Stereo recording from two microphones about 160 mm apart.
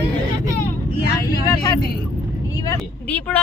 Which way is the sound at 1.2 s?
25° left (ahead or behind).